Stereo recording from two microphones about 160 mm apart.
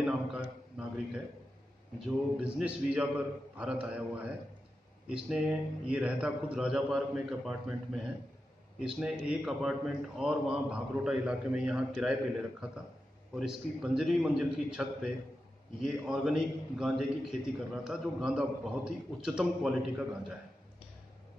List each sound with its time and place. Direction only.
0.0 s a man's voice: 5° right (ahead or behind)
2.0 s a man's voice: 5° right (ahead or behind)
13.3 s a man's voice: centre (ahead or behind)